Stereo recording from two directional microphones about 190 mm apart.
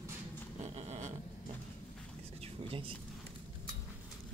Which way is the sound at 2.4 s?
30° right (ahead or behind).